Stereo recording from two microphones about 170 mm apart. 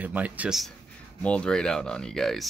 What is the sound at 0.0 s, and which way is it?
Speech, 10° right (ahead or behind).